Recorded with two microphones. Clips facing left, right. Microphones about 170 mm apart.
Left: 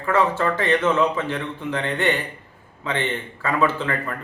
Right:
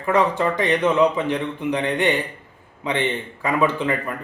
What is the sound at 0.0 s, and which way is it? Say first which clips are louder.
A man's voice: right 1 dB; 15° right (ahead or behind).